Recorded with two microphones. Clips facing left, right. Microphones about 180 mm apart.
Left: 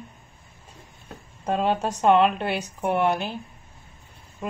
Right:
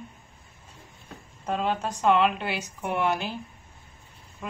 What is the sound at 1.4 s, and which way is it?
Speech, 50° left (ahead or behind).